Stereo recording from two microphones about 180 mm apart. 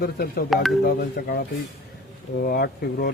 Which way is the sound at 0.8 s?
65° left (ahead or behind).